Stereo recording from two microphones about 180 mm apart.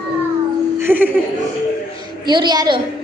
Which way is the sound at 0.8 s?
10° right (ahead or behind).